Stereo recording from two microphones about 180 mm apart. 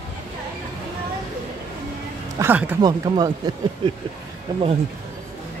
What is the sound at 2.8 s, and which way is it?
Speech, 20° right (ahead or behind).